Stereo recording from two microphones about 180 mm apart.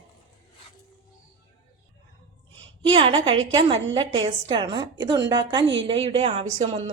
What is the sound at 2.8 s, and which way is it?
A woman's voice, 30° right (ahead or behind).